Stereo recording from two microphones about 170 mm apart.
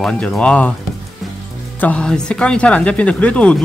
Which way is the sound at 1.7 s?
10° left (ahead or behind).